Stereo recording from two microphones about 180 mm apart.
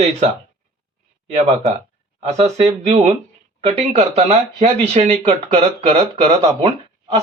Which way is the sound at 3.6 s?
35° right (ahead or behind).